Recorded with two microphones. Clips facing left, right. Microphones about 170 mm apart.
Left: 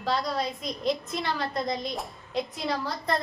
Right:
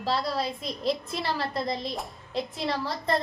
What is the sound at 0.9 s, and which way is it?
Speech, 30° right (ahead or behind).